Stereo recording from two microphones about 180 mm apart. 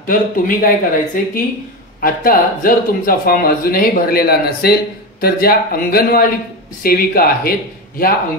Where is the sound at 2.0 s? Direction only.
55° left (ahead or behind).